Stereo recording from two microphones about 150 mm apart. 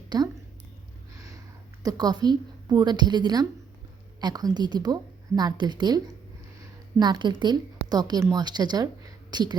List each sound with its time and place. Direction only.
0.1 s a woman's voice: 30° right (ahead or behind)
1.8 s a woman's voice: 25° right (ahead or behind)
7.0 s speech: 30° right (ahead or behind)